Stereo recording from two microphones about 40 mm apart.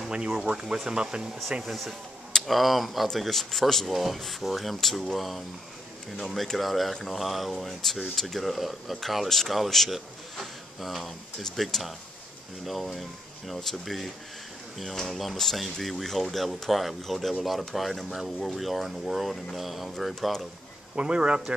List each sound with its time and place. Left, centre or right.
0.1 s speech: right
1.6 s speech: centre
20.9 s speech: right